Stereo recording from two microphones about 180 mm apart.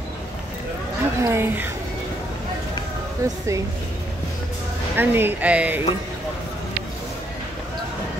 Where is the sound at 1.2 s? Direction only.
15° right (ahead or behind).